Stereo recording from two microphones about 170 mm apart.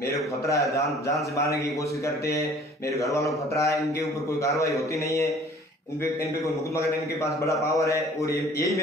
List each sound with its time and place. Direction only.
0.5 s a man's voice: 20° left (ahead or behind)
2.0 s speech: 20° left (ahead or behind)
6.4 s speech: 15° left (ahead or behind)